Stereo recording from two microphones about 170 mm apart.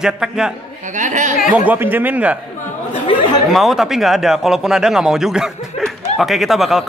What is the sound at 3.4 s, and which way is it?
A man's voice, centre (ahead or behind).